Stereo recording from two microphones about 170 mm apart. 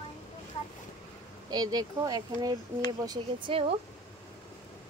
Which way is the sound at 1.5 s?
25° right (ahead or behind).